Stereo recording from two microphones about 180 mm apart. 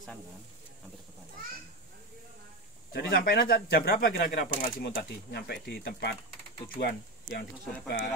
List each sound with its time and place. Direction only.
2.9 s speech: 60° left (ahead or behind)